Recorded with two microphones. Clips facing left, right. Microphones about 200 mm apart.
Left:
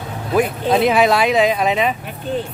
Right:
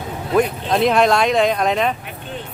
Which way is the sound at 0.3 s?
5° left (ahead or behind).